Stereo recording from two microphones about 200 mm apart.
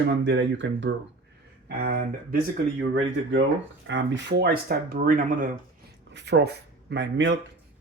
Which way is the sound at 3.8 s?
70° right (ahead or behind).